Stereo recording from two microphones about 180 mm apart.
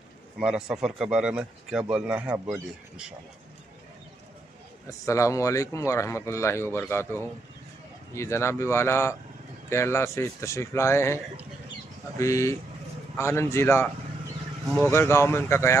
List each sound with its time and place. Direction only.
0.4 s speech: 5° right (ahead or behind)
4.8 s speech: 15° left (ahead or behind)
12.2 s speech: 15° left (ahead or behind)
14.9 s speech: 15° left (ahead or behind)